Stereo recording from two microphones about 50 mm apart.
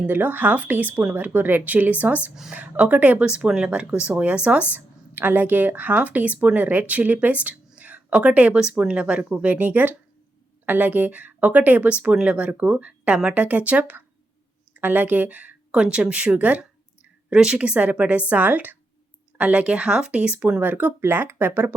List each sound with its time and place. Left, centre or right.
0.1 s speech: right
3.2 s speech: centre
5.1 s speech: right
8.5 s speech: centre; by 15.5 s right
15.7 s speech: centre
17.2 s speech: centre; by 18.8 s right
19.4 s speech: right
20.6 s speech: right
21.0 s speech: right